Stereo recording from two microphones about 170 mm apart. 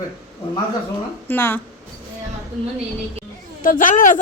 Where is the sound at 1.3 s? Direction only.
10° left (ahead or behind).